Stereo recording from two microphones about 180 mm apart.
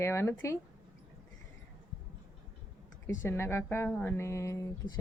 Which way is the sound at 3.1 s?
15° left (ahead or behind).